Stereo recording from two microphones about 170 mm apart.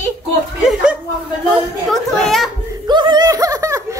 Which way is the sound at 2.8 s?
25° right (ahead or behind).